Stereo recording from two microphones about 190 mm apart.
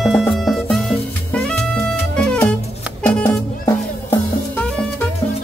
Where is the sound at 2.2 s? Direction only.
5° left (ahead or behind).